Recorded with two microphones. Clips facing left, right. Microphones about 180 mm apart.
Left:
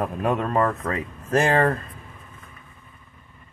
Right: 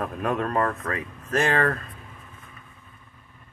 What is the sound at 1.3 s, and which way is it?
Speech, 35° left (ahead or behind).